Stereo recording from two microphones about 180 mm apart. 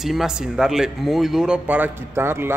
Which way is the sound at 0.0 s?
Centre (ahead or behind).